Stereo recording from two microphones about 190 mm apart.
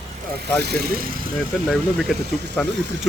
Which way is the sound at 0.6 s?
55° right (ahead or behind).